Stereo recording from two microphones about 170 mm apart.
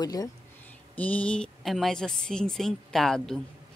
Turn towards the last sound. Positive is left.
turn(degrees=0)  # may be behind; listen again after turning